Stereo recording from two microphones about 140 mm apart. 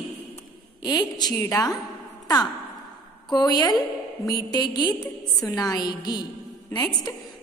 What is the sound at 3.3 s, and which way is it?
A woman's voice, 30° left (ahead or behind).